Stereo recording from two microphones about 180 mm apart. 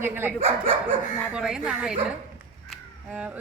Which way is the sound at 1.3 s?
5° right (ahead or behind).